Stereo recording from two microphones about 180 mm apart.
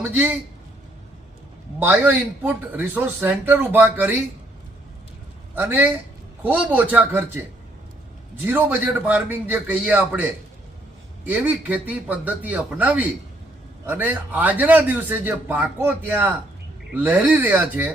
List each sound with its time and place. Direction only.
0.0 s a man's voice: 10° right (ahead or behind)
1.8 s a man's voice: 10° right (ahead or behind)
5.5 s a man's voice: 10° right (ahead or behind)
8.4 s a man's voice: 10° right (ahead or behind)